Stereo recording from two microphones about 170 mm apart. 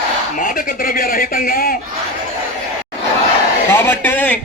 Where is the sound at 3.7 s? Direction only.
15° left (ahead or behind).